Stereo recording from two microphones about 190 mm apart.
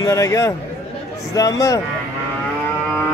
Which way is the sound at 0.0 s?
15° left (ahead or behind).